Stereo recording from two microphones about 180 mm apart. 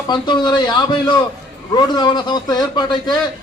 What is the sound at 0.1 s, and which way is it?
A man's voice, 25° left (ahead or behind).